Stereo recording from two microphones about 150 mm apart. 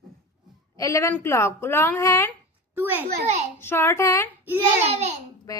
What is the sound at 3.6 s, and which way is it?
Speech, 15° left (ahead or behind).